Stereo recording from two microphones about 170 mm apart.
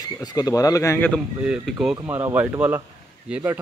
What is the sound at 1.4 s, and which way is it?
A man's voice, 5° right (ahead or behind).